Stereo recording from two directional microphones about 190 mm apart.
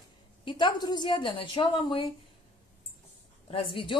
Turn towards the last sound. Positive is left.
turn(degrees=25)  # may be behind; listen again after turning